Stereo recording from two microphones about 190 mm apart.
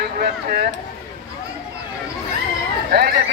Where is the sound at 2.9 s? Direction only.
55° right (ahead or behind).